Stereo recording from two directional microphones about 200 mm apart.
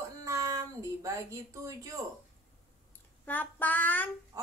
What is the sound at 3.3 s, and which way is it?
Child singing, 10° left (ahead or behind).